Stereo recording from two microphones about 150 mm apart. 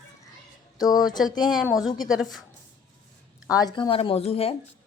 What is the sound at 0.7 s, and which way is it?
Speech, 25° left (ahead or behind).